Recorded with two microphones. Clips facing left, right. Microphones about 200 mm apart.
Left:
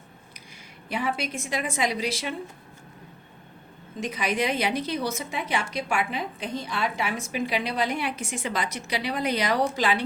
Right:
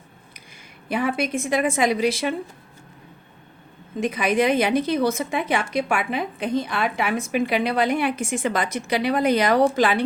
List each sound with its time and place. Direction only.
0.9 s a woman's voice: 55° right (ahead or behind)
4.0 s a woman's voice: 55° right (ahead or behind)